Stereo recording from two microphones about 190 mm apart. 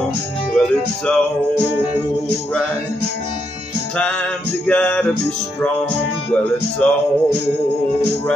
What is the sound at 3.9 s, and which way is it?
Music, 5° left (ahead or behind).